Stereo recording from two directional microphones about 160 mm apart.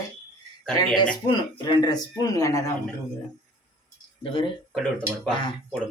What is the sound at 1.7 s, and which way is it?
Speech, 25° left (ahead or behind).